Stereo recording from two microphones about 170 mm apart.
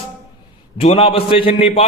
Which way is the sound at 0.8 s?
35° left (ahead or behind).